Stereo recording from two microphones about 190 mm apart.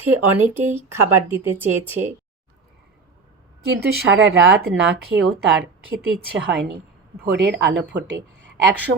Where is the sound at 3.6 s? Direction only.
60° right (ahead or behind).